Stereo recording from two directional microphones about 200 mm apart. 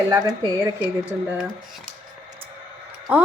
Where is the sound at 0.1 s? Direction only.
15° right (ahead or behind).